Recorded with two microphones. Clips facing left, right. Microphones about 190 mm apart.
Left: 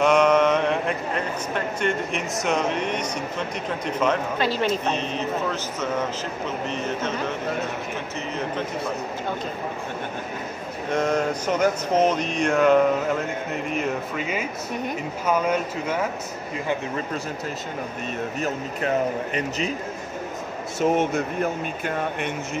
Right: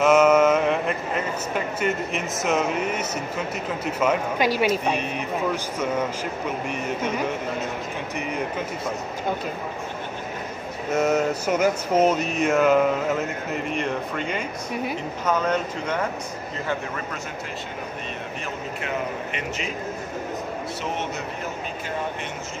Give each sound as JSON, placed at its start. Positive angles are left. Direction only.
{"t": 0.0, "sound": "speech", "side_deg": -5}
{"t": 10.9, "sound": "speech", "side_deg": -5}
{"t": 20.8, "sound": "a man's voice", "side_deg": 50}